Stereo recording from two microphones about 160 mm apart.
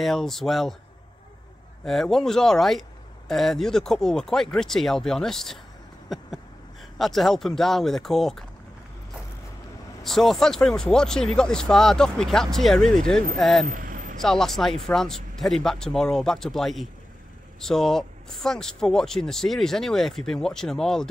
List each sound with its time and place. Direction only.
0.0 s speech: centre (ahead or behind)
1.9 s speech: centre (ahead or behind)
6.0 s a sound: centre (ahead or behind)
7.0 s speech: centre (ahead or behind)
10.0 s speech: centre (ahead or behind)
13.7 s vehicle: 60° right (ahead or behind)
14.2 s speech: centre (ahead or behind)